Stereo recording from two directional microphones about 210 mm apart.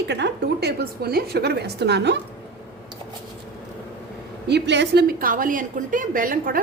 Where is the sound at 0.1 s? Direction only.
55° right (ahead or behind).